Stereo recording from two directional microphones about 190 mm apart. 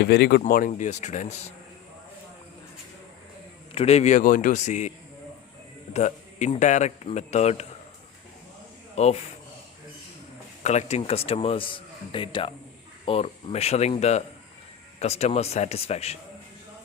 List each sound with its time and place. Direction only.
0.0 s speech: 60° left (ahead or behind); by 1.5 s 40° left (ahead or behind)
3.8 s speech: 35° left (ahead or behind)
5.9 s speech: 40° left (ahead or behind)
9.0 s speech: 35° left (ahead or behind)
10.6 s a man's voice: 35° left (ahead or behind)